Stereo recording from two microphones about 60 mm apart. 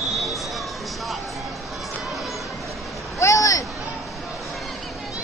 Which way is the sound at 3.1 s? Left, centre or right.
Left.